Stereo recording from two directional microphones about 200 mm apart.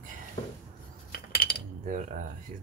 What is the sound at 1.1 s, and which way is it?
Cutlery, 50° left (ahead or behind).